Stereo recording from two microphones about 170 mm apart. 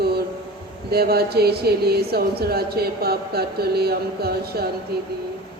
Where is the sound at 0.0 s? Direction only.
70° right (ahead or behind).